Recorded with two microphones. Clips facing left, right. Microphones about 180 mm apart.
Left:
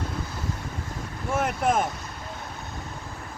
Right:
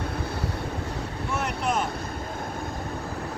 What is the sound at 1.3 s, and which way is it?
Boat, 50° left (ahead or behind).